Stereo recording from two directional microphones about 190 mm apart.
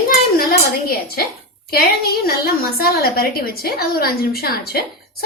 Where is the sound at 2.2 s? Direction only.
55° left (ahead or behind).